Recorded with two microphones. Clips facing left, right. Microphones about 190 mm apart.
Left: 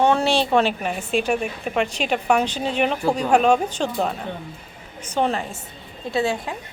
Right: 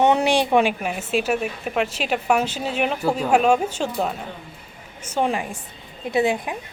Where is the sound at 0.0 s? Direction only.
20° right (ahead or behind).